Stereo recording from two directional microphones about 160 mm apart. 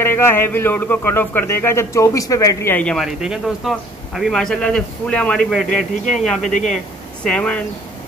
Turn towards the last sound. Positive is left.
turn(degrees=5)  # may be behind; listen again after turning